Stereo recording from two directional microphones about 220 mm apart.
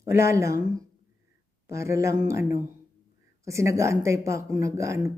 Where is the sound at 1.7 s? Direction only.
15° right (ahead or behind).